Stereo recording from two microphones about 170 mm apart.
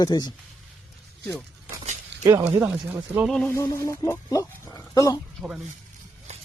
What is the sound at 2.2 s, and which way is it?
Speech, 10° right (ahead or behind).